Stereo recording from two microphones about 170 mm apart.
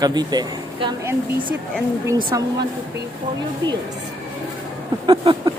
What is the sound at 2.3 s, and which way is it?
Speech, 20° right (ahead or behind).